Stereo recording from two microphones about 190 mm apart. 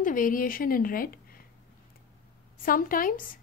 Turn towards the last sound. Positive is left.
turn(degrees=45)  # may be behind; listen again after turning